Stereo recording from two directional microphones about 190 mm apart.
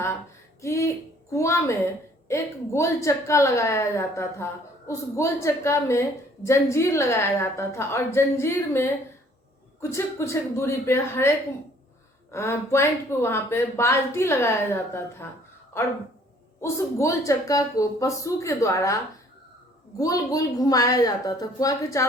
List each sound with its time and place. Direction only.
0.6 s a woman's voice: 15° left (ahead or behind)
12.3 s a woman's voice: 15° left (ahead or behind)
20.0 s a woman's voice: 20° left (ahead or behind)